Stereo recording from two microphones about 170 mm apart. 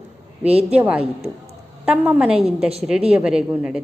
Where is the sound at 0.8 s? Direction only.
5° right (ahead or behind).